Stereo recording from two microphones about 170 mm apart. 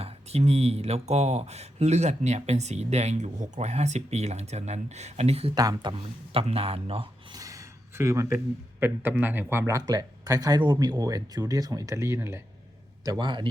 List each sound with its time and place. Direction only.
0.0 s speech: 35° right (ahead or behind)
5.5 s speech: 25° right (ahead or behind)
6.3 s speech: 35° right (ahead or behind); by 12.4 s 15° right (ahead or behind)
13.1 s speech: 25° right (ahead or behind)